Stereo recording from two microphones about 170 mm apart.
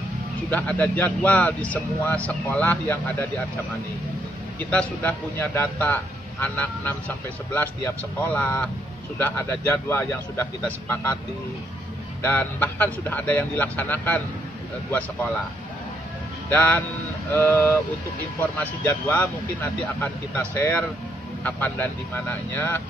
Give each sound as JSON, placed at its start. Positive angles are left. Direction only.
{"t": 0.5, "sound": "speech", "side_deg": 10}
{"t": 4.6, "sound": "speech", "side_deg": 10}
{"t": 12.2, "sound": "speech", "side_deg": 10}
{"t": 16.4, "sound": "speech", "side_deg": 10}